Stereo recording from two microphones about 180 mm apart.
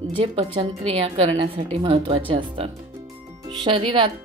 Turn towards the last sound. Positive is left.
turn(degrees=-30)  # may be behind; listen again after turning